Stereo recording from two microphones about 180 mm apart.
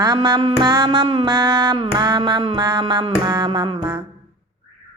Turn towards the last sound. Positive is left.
turn(degrees=-20)  # may be behind; listen again after turning